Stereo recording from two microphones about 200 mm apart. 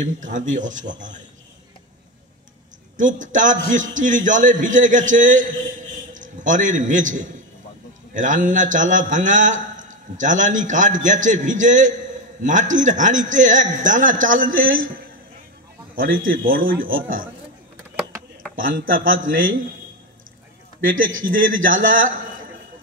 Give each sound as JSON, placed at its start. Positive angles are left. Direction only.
{"t": 0.0, "sound": "a man's voice", "side_deg": -40}
{"t": 3.0, "sound": "a man's voice", "side_deg": -40}
{"t": 15.9, "sound": "a man's voice", "side_deg": -45}
{"t": 18.6, "sound": "speech", "side_deg": -45}
{"t": 21.2, "sound": "speech", "side_deg": -45}